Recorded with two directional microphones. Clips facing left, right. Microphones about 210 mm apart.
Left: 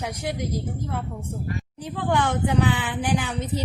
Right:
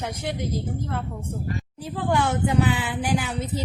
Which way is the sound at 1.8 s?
5° right (ahead or behind).